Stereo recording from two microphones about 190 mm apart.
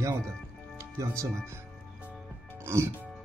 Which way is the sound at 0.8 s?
20° right (ahead or behind).